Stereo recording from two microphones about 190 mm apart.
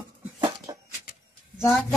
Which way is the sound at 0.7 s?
20° right (ahead or behind).